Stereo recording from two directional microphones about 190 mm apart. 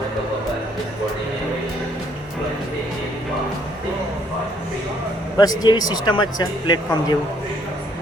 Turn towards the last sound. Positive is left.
turn(degrees=20)  # may be behind; listen again after turning